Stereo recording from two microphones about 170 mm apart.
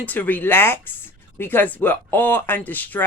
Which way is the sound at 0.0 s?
10° left (ahead or behind).